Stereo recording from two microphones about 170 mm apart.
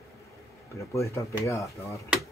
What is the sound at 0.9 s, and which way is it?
Speech, 15° left (ahead or behind).